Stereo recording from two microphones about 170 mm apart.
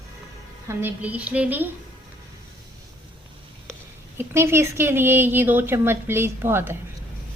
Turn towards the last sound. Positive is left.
turn(degrees=-15)  # may be behind; listen again after turning